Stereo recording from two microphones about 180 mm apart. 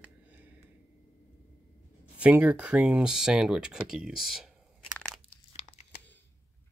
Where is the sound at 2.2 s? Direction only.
10° right (ahead or behind).